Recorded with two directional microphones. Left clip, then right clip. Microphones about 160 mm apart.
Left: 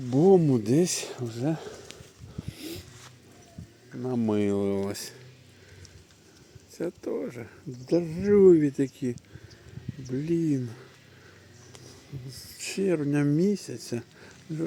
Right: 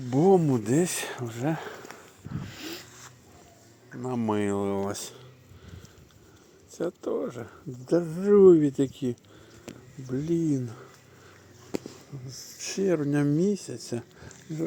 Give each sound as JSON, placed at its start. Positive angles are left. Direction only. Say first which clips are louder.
{"t": 0.1, "sound": "speech", "louder": "left 1 dB", "side_deg": 15}
{"t": 2.4, "sound": "dog", "louder": "even", "side_deg": 25}
{"t": 3.9, "sound": "speech", "louder": "left 1 dB", "side_deg": 5}
{"t": 4.2, "sound": "speech", "louder": "left 1 dB", "side_deg": 20}
{"t": 4.9, "sound": "speech", "louder": "right 1 dB", "side_deg": 5}
{"t": 6.7, "sound": "speech", "louder": "right 2 dB", "side_deg": 0}
{"t": 10.1, "sound": "speech", "louder": "even", "side_deg": 10}
{"t": 12.6, "sound": "speech", "louder": "right 1 dB", "side_deg": 5}